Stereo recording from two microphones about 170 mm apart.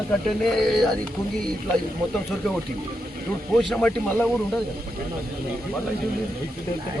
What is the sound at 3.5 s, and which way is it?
Speech, centre (ahead or behind).